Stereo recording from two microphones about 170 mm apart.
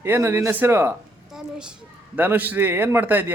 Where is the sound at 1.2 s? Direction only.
5° right (ahead or behind).